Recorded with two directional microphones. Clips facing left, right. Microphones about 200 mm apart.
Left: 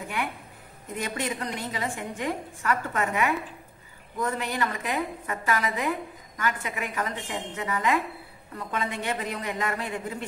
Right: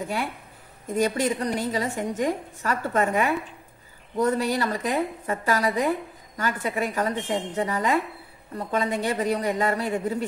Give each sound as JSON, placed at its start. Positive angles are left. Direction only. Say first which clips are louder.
{"t": 0.9, "sound": "a woman's voice", "louder": "right 8 dB", "side_deg": -40}